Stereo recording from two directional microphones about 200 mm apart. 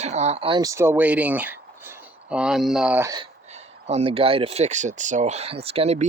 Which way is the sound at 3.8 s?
30° right (ahead or behind).